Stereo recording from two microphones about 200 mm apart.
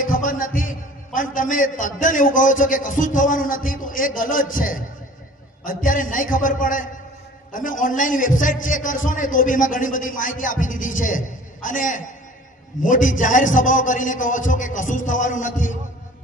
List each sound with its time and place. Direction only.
0.0 s a man's voice: 45° left (ahead or behind)